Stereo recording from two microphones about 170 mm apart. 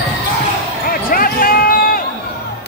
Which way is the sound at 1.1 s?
60° left (ahead or behind).